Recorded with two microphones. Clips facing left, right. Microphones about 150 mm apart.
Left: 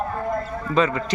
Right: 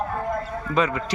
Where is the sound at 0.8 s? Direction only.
10° right (ahead or behind).